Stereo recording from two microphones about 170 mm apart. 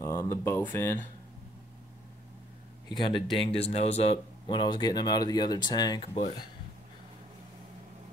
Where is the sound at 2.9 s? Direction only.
30° left (ahead or behind).